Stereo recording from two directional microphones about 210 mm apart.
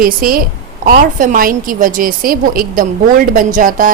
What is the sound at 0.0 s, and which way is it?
A woman's voice, 45° right (ahead or behind).